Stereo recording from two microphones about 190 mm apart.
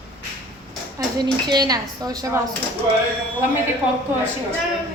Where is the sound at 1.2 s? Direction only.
20° right (ahead or behind).